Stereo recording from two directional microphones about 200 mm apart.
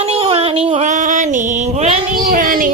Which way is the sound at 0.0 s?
30° right (ahead or behind).